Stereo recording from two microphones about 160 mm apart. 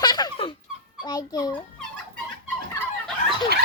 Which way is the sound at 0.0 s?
25° left (ahead or behind).